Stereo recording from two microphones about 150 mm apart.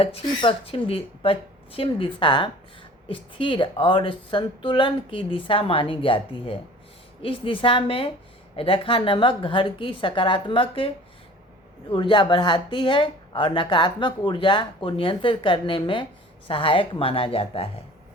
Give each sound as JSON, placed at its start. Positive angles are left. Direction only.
{"t": 0.0, "sound": "speech", "side_deg": 40}